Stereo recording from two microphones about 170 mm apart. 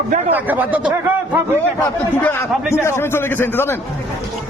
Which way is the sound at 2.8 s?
15° left (ahead or behind).